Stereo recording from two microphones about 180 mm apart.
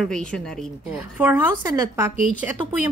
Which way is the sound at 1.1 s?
10° right (ahead or behind).